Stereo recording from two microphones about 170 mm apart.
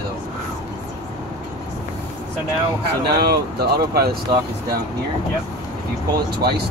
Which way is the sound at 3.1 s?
70° right (ahead or behind).